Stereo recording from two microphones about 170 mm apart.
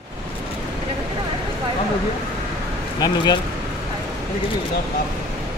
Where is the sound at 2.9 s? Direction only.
25° left (ahead or behind).